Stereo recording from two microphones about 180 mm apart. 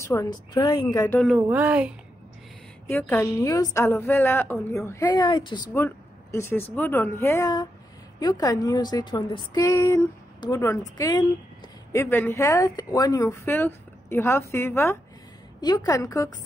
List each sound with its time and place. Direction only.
0.0 s a woman's voice: 15° left (ahead or behind)
1.2 s speech: 5° right (ahead or behind)
2.9 s speech: 10° left (ahead or behind); by 5.6 s 25° left (ahead or behind)
5.7 s a woman's voice: 10° left (ahead or behind)